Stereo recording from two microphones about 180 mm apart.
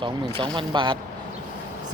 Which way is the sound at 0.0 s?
25° right (ahead or behind).